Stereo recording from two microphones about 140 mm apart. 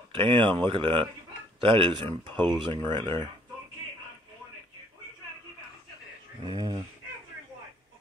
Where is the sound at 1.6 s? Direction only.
40° right (ahead or behind).